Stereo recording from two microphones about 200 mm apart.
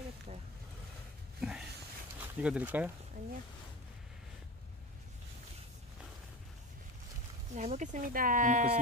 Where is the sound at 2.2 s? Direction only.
5° right (ahead or behind).